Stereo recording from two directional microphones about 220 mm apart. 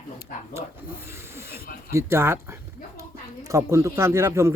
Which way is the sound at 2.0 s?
10° right (ahead or behind).